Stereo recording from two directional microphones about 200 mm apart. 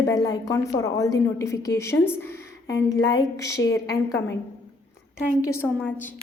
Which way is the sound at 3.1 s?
15° left (ahead or behind).